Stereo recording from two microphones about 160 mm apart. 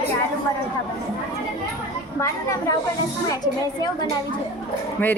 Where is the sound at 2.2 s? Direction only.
20° left (ahead or behind).